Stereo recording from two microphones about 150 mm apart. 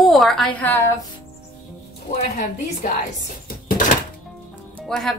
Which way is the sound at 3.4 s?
70° left (ahead or behind).